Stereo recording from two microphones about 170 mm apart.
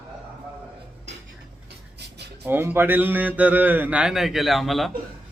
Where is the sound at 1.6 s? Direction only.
75° right (ahead or behind).